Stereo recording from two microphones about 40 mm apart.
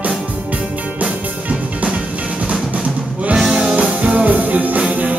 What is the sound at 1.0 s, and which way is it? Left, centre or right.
Music, right.